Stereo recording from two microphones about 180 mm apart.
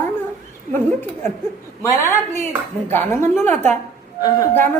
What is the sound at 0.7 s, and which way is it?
A woman's voice, 10° left (ahead or behind).